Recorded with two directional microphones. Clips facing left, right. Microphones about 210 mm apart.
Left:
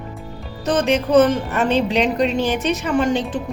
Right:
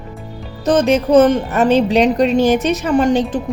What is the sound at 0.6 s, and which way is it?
Speech, 40° right (ahead or behind).